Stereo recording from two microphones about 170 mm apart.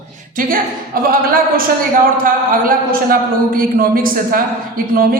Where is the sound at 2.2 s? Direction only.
55° right (ahead or behind).